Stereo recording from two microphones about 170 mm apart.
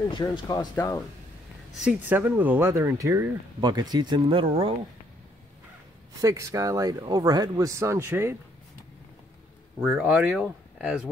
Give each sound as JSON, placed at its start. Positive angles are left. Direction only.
{"t": 0.1, "sound": "speech", "side_deg": 25}
{"t": 1.8, "sound": "speech", "side_deg": -10}
{"t": 6.2, "sound": "speech", "side_deg": -20}
{"t": 9.8, "sound": "speech", "side_deg": -5}